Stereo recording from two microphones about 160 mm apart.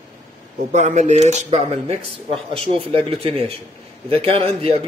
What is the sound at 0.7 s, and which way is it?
Speech, 45° right (ahead or behind).